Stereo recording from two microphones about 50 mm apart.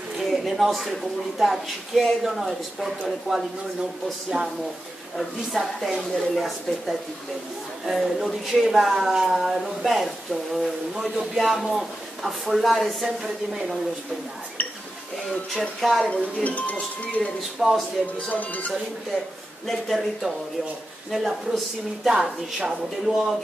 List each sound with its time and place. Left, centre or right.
0.2 s speech: centre
14.6 s a sound: left
15.8 s speech: centre
16.4 s speech: left
17.6 s speech: centre
18.3 s speech: left
19.6 s speech: centre